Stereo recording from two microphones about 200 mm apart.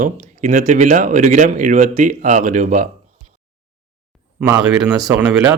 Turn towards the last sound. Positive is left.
turn(degrees=-5)  # may be behind; listen again after turning